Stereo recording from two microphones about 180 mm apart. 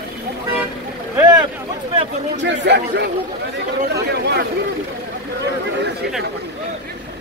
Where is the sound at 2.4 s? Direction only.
70° right (ahead or behind).